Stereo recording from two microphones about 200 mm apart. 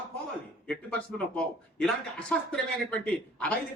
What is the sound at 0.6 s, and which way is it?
A man's voice, 5° left (ahead or behind).